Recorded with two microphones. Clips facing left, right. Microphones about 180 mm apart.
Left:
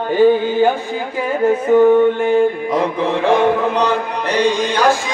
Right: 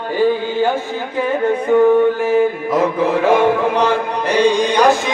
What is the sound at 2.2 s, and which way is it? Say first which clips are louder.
Music: left 1 dB; centre (ahead or behind).